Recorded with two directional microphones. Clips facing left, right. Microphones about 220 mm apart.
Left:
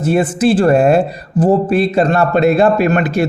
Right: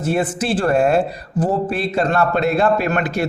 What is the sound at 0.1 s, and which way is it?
Speech, 15° left (ahead or behind).